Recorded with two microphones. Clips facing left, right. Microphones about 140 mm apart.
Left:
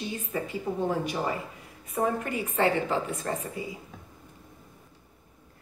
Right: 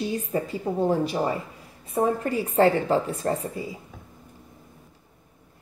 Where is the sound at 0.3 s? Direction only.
35° right (ahead or behind).